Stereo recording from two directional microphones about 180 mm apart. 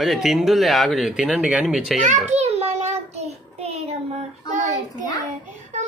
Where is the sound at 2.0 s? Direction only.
40° right (ahead or behind).